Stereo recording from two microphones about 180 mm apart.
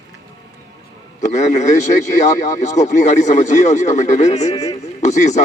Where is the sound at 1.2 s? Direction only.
40° left (ahead or behind).